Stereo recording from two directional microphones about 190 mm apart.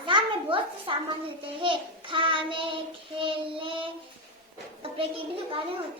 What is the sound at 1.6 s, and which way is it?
Child singing, 25° right (ahead or behind).